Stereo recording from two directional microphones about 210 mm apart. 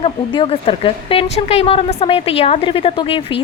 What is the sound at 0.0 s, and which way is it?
Speech, 25° left (ahead or behind).